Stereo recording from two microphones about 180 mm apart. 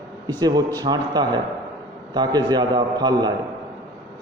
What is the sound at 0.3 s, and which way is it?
A man's voice, 20° right (ahead or behind).